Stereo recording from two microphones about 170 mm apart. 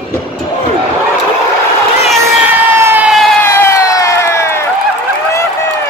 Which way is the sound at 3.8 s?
20° left (ahead or behind).